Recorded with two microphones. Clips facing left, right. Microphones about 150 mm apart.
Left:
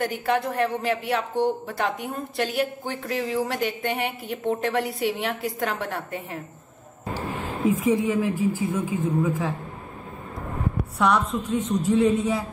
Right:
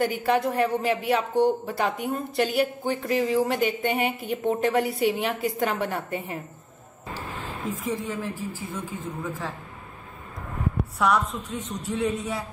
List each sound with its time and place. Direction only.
0.0 s speech: centre (ahead or behind)
7.2 s speech: 10° left (ahead or behind)
11.0 s speech: centre (ahead or behind)